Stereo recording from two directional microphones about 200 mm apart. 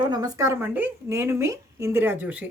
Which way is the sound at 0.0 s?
20° right (ahead or behind).